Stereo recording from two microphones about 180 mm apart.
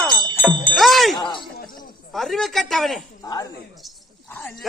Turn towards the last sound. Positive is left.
turn(degrees=0)  # may be behind; listen again after turning